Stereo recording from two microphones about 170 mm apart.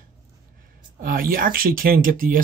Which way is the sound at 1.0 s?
60° right (ahead or behind).